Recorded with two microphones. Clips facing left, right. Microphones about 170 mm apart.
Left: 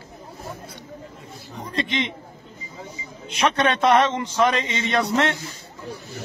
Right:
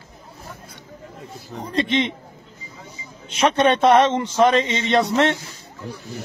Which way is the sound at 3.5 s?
25° right (ahead or behind).